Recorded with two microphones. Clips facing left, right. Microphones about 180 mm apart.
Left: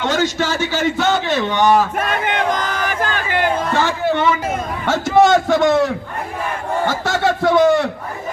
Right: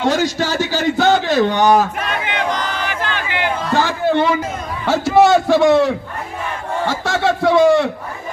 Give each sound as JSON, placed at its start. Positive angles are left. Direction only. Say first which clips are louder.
{"t": 0.0, "sound": "a man's voice", "louder": "right 1 dB", "side_deg": -35}
{"t": 2.0, "sound": "battle cry", "louder": "left 2 dB", "side_deg": 50}
{"t": 3.8, "sound": "a sound", "louder": "right 5 dB", "side_deg": -35}
{"t": 5.1, "sound": "speech", "louder": "right 1 dB", "side_deg": -5}